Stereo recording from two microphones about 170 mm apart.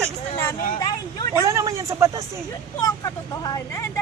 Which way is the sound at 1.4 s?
15° right (ahead or behind).